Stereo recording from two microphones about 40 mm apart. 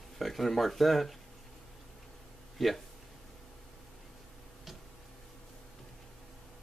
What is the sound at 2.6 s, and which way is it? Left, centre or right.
Speech, centre.